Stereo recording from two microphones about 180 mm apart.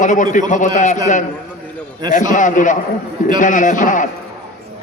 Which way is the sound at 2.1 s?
45° left (ahead or behind).